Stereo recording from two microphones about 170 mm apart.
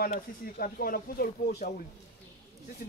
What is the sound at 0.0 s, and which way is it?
Speech, 55° left (ahead or behind).